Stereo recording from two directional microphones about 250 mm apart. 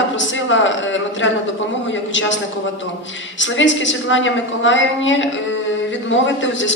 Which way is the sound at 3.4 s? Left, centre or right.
Left.